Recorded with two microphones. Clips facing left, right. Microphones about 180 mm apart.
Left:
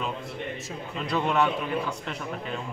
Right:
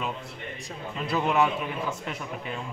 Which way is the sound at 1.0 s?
5° right (ahead or behind).